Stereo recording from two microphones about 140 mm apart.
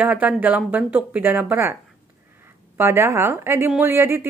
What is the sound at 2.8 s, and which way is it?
A woman's voice, 20° right (ahead or behind).